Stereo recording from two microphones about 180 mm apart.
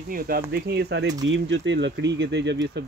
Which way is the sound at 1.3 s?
85° right.